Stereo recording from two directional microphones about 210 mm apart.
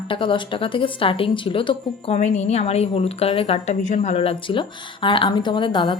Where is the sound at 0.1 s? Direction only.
25° left (ahead or behind).